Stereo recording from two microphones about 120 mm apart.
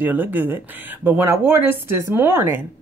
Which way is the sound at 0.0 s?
15° right (ahead or behind).